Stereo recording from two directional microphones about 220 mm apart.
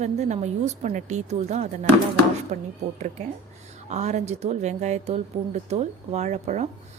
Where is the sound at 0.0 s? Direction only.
30° right (ahead or behind).